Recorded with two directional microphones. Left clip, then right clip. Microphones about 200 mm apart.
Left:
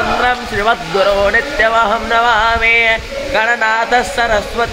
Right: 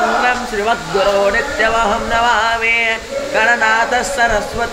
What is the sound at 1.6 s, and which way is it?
Music, 30° left (ahead or behind).